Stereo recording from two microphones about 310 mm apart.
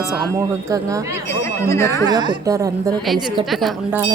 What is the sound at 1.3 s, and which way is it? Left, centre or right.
Speech, centre.